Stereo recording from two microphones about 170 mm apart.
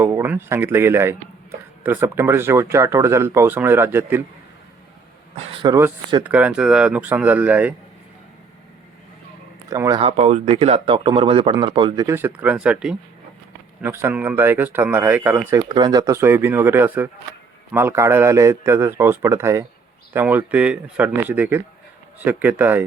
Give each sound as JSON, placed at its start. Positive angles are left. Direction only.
{"t": 0.0, "sound": "speech", "side_deg": -15}
{"t": 5.4, "sound": "speech", "side_deg": -30}
{"t": 6.2, "sound": "speech", "side_deg": -10}
{"t": 9.6, "sound": "speech", "side_deg": -20}
{"t": 10.0, "sound": "speech", "side_deg": -40}
{"t": 12.0, "sound": "speech", "side_deg": -15}